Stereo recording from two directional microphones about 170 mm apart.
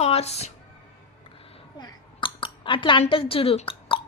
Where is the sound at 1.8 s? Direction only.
30° left (ahead or behind).